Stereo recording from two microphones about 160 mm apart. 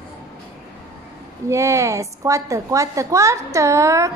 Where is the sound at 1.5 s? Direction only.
20° right (ahead or behind).